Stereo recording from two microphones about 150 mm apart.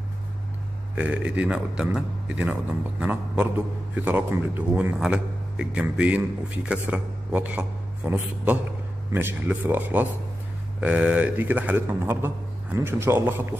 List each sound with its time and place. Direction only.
0.9 s a man's voice: 10° right (ahead or behind)